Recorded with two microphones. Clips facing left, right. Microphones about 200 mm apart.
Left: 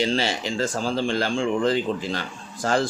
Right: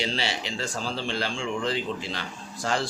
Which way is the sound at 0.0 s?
45° left (ahead or behind).